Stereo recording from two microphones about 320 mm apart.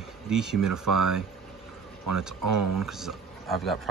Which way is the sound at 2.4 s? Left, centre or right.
Right.